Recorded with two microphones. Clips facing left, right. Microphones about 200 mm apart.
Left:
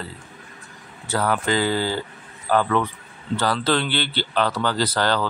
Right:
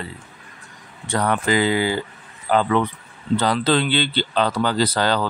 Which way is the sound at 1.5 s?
15° right (ahead or behind).